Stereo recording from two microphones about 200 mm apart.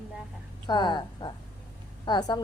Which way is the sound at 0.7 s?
20° left (ahead or behind).